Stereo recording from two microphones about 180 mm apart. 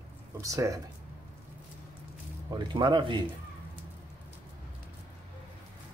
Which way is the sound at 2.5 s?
25° right (ahead or behind).